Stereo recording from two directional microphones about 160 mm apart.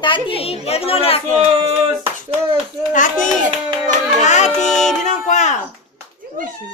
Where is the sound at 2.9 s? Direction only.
55° left (ahead or behind).